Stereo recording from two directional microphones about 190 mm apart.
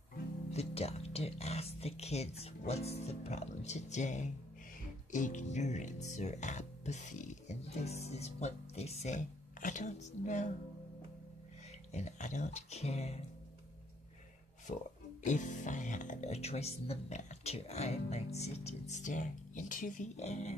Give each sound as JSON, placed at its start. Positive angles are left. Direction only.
{"t": 0.5, "sound": "speech", "side_deg": 35}
{"t": 11.9, "sound": "speech", "side_deg": 40}
{"t": 14.7, "sound": "speech", "side_deg": 45}